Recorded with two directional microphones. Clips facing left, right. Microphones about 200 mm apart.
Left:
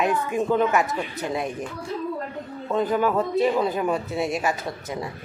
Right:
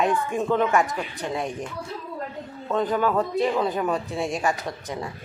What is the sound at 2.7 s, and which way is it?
Speech, 10° left (ahead or behind).